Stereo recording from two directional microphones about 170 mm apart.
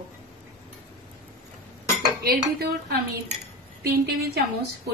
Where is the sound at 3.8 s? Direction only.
70° right (ahead or behind).